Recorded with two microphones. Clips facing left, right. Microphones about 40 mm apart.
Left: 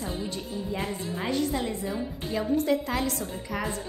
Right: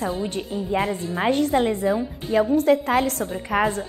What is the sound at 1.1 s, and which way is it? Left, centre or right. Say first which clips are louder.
A woman's voice: right 8 dB; right.